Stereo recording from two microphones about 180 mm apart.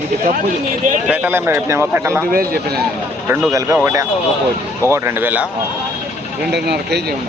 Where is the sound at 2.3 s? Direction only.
55° right (ahead or behind).